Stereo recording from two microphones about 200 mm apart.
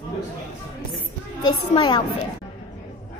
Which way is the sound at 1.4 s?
20° left (ahead or behind).